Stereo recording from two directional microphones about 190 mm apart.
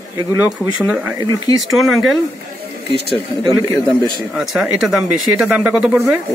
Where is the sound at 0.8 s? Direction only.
5° right (ahead or behind).